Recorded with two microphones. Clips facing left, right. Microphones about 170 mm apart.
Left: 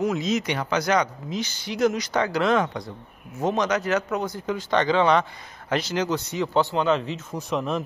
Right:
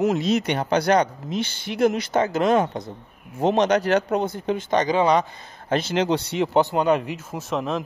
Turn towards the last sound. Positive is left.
turn(degrees=0)  # may be behind; listen again after turning